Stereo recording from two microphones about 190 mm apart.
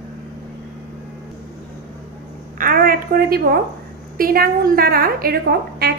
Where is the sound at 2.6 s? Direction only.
50° right (ahead or behind).